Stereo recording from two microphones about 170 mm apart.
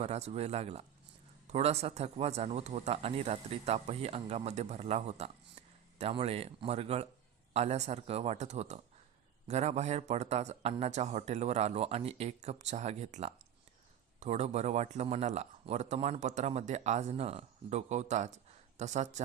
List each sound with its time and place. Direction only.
0.0 s a man's voice: 40° right (ahead or behind)